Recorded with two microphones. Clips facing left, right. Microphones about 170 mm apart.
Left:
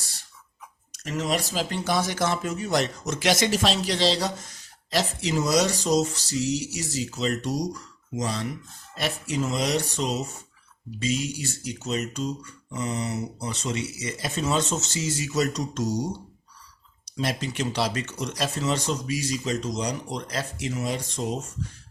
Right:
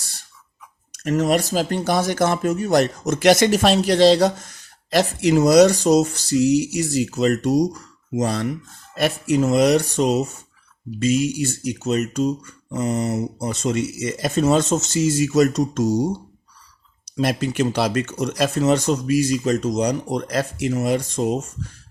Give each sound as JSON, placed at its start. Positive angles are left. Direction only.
{"t": 1.0, "sound": "speech", "side_deg": -50}
{"t": 17.2, "sound": "speech", "side_deg": -55}